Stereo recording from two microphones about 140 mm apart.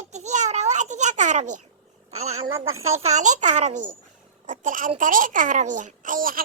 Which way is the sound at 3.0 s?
60° right (ahead or behind).